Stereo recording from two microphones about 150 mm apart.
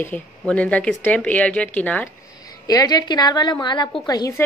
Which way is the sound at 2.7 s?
25° left (ahead or behind).